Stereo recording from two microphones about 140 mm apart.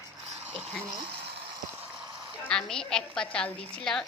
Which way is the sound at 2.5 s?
5° left (ahead or behind).